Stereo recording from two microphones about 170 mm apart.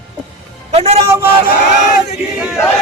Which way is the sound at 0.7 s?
35° right (ahead or behind).